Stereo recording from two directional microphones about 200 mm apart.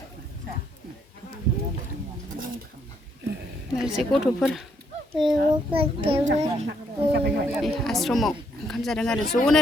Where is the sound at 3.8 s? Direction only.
Centre (ahead or behind).